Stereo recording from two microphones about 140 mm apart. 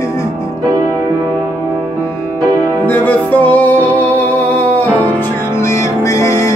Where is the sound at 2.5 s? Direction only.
15° left (ahead or behind).